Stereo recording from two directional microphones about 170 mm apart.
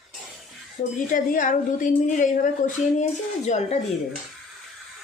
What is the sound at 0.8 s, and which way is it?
A woman's voice, 45° left (ahead or behind).